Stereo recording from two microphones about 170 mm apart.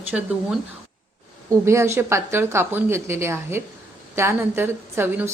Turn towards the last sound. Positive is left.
turn(degrees=-10)  # may be behind; listen again after turning